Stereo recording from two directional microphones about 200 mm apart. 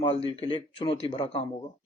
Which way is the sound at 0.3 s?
25° left (ahead or behind).